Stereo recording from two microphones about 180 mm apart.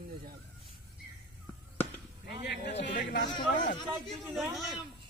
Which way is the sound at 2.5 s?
75° left (ahead or behind).